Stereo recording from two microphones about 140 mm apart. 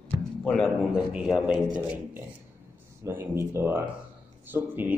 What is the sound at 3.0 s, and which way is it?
Speech, 15° right (ahead or behind).